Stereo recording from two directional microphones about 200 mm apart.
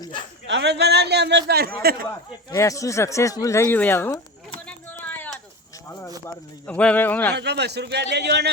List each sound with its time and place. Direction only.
0.4 s speech: 60° right (ahead or behind)
2.5 s speech: 15° left (ahead or behind)
4.6 s a sound: 5° left (ahead or behind)
6.2 s speech: 5° left (ahead or behind)
7.3 s speech: 55° right (ahead or behind)